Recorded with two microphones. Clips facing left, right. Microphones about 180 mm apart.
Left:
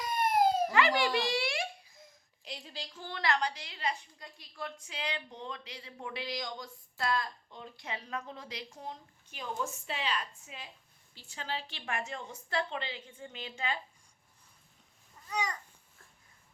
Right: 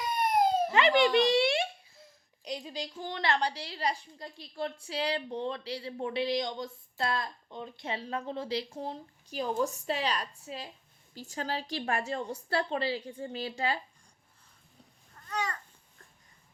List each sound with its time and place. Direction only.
0.0 s police car: centre (ahead or behind)
0.7 s a child's voice: 20° right (ahead or behind); by 13.7 s 35° right (ahead or behind)
15.1 s babbling: 10° left (ahead or behind)